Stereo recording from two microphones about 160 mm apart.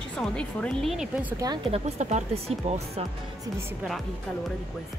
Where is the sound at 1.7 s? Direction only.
45° right (ahead or behind).